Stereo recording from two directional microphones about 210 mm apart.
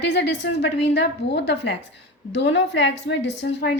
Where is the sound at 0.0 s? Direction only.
55° left (ahead or behind).